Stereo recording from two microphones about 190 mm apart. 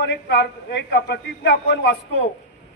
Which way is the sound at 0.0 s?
60° left (ahead or behind).